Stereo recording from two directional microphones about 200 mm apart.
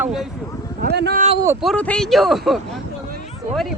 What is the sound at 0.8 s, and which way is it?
Speech, 55° right (ahead or behind).